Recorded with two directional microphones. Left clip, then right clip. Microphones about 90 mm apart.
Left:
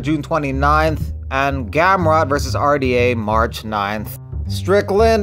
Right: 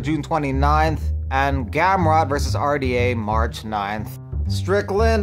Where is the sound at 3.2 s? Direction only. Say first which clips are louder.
Left 6 dB; 55° left (ahead or behind).